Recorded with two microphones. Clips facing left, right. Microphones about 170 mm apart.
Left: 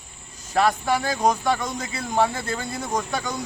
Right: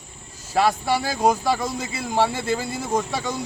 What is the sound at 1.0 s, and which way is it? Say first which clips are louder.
Speech: right 2 dB; 5° right (ahead or behind).